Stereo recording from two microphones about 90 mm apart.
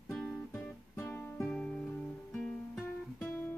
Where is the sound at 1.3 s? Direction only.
10° left (ahead or behind).